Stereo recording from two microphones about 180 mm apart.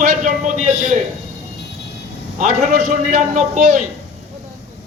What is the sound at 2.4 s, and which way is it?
A man's voice, 45° right (ahead or behind).